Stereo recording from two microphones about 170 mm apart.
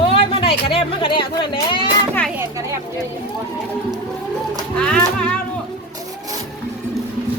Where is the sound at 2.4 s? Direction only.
15° right (ahead or behind).